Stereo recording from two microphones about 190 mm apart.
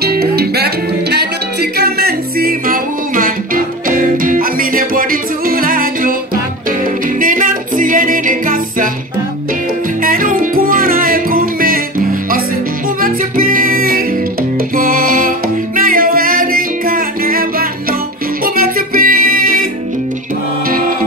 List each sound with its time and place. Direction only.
0.0 s music: 55° right (ahead or behind)
7.2 s music: 45° right (ahead or behind)
10.0 s music: 50° right (ahead or behind)
13.0 s music: 45° right (ahead or behind)